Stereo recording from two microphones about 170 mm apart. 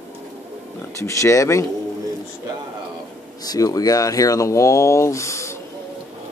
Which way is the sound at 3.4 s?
20° left (ahead or behind).